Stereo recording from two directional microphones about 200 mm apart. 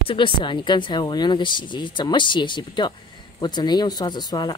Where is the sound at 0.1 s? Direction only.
25° left (ahead or behind).